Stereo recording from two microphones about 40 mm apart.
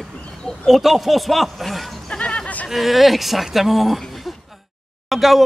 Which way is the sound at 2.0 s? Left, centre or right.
Left.